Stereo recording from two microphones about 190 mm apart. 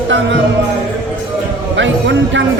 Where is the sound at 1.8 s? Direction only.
70° right (ahead or behind).